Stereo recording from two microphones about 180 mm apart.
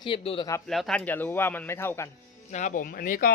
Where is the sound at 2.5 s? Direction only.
40° left (ahead or behind).